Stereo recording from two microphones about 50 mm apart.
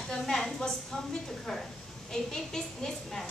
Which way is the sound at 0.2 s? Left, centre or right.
Centre.